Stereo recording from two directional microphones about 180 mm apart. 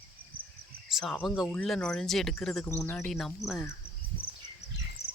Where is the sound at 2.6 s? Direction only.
15° left (ahead or behind).